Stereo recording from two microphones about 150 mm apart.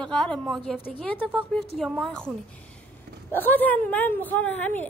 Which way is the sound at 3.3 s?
10° left (ahead or behind).